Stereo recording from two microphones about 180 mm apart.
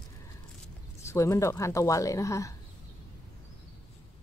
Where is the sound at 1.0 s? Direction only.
15° left (ahead or behind).